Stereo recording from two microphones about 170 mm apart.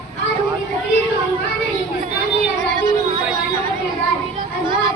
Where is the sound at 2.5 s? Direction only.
50° right (ahead or behind).